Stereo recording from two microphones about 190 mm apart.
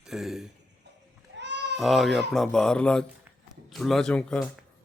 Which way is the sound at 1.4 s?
70° right (ahead or behind).